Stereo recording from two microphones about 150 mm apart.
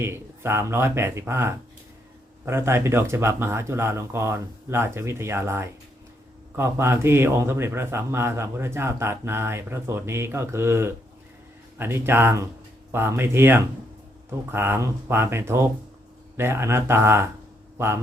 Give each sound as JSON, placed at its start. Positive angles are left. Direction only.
{"t": 0.0, "sound": "a man's voice", "side_deg": -15}